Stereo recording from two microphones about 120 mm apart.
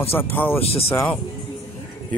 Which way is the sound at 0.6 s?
55° left (ahead or behind).